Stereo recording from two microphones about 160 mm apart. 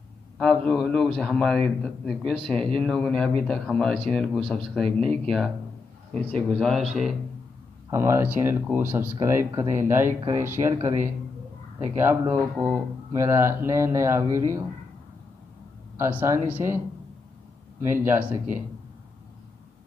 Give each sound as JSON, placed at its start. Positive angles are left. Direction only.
{"t": 0.4, "sound": "a man's voice", "side_deg": 0}
{"t": 6.6, "sound": "a man's voice", "side_deg": 5}
{"t": 7.9, "sound": "speech", "side_deg": -15}
{"t": 16.0, "sound": "speech", "side_deg": -15}
{"t": 17.8, "sound": "speech", "side_deg": -15}